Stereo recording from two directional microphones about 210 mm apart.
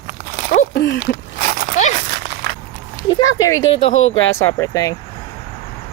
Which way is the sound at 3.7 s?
25° left (ahead or behind).